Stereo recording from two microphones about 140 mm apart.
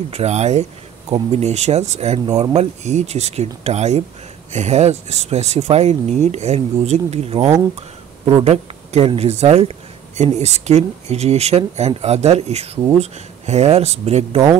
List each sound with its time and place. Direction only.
0.1 s speech: 50° right (ahead or behind)